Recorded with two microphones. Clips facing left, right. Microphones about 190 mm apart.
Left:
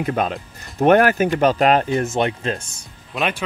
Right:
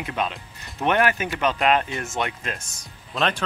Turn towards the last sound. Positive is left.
turn(degrees=0)  # may be behind; listen again after turning